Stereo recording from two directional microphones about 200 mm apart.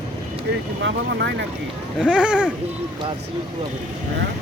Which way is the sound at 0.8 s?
60° right (ahead or behind).